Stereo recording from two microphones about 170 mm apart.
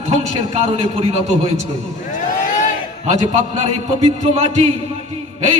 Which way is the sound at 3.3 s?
35° right (ahead or behind).